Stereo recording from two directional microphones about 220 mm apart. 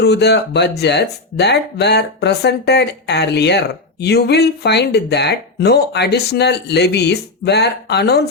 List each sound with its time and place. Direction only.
0.0 s speech: 50° left (ahead or behind)